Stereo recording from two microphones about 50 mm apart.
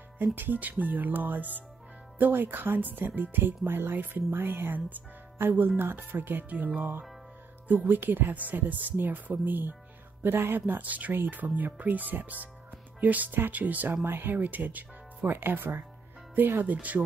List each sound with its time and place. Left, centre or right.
0.4 s speech: right
14.0 s speech: right
16.7 s speech: right